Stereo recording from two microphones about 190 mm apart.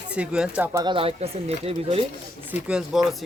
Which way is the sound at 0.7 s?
20° right (ahead or behind).